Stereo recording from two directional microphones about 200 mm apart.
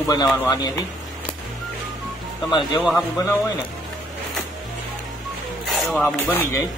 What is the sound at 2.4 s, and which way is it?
Speech, 20° left (ahead or behind).